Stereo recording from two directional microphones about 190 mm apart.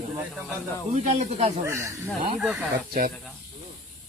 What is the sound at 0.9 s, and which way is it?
Speech, 35° right (ahead or behind).